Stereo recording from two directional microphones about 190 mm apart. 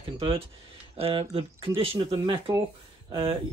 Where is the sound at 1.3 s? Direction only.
30° right (ahead or behind).